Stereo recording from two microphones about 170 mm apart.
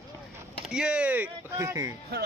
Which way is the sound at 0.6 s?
5° right (ahead or behind).